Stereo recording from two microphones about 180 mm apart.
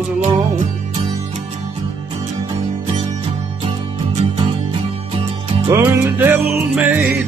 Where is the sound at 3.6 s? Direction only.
40° right (ahead or behind).